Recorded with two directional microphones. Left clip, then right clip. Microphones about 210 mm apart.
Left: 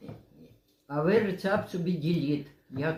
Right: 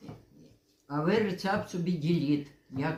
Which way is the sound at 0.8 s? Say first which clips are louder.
Left 3 dB; 20° right (ahead or behind).